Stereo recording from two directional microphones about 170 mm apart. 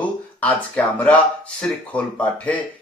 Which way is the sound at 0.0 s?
10° left (ahead or behind).